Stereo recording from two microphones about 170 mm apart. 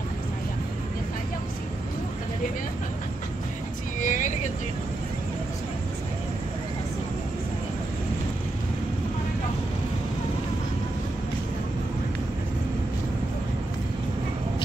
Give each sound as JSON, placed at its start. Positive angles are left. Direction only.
{"t": 4.0, "sound": "vehicle", "side_deg": 50}